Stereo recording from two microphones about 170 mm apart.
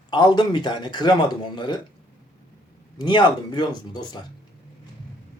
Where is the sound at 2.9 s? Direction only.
25° left (ahead or behind).